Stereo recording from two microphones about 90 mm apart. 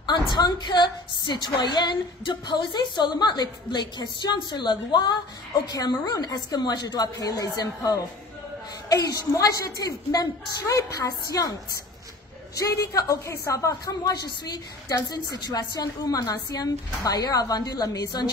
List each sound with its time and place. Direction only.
0.0 s a woman's voice: 50° left (ahead or behind)
10.6 s a woman's voice: 35° left (ahead or behind)
12.5 s a woman's voice: 40° left (ahead or behind)